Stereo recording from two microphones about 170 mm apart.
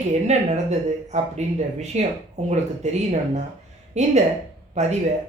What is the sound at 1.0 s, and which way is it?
Speech, 40° right (ahead or behind).